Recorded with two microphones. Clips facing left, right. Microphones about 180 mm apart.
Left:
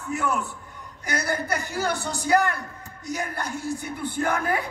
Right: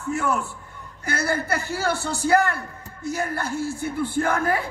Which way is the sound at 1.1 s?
15° left (ahead or behind).